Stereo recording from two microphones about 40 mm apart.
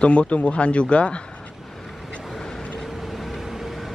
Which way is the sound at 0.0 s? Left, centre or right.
Left.